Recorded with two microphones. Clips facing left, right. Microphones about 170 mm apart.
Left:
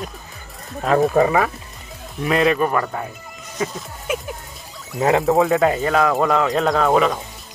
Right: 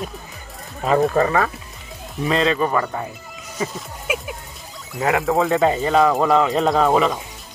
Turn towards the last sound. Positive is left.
turn(degrees=0)  # may be behind; listen again after turning